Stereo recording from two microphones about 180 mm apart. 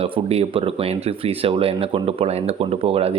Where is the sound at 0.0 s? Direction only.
35° right (ahead or behind).